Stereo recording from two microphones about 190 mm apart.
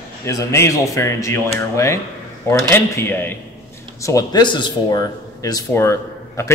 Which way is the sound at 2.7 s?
10° left (ahead or behind).